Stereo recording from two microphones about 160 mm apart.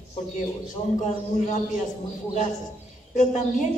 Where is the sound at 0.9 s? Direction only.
50° left (ahead or behind).